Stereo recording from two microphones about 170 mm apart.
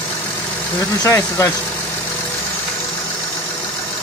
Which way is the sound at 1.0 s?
15° left (ahead or behind).